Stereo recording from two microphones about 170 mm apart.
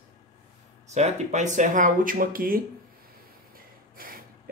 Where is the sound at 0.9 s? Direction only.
40° right (ahead or behind); by 2.6 s 60° right (ahead or behind).